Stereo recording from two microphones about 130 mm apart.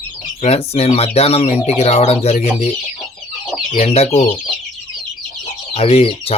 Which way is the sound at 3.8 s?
50° left (ahead or behind).